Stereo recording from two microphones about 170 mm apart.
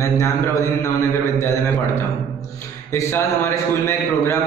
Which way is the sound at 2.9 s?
15° left (ahead or behind).